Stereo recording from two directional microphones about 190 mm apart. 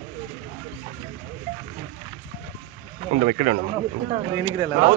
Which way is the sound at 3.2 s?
35° right (ahead or behind).